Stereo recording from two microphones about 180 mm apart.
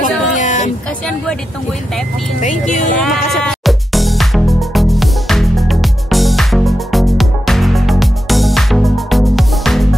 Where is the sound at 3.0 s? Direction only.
Centre (ahead or behind).